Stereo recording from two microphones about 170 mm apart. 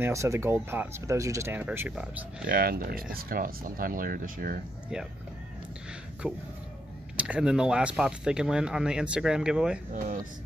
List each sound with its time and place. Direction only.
0.0 s speech: 15° right (ahead or behind)
2.4 s speech: 60° right (ahead or behind)
6.2 s speech: 5° right (ahead or behind)